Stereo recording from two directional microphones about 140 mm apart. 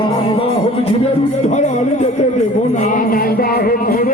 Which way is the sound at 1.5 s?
60° left (ahead or behind).